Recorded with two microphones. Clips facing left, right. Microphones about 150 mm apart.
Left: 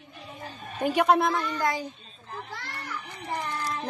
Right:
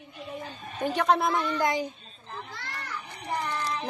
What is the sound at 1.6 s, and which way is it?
Speech, 20° right (ahead or behind).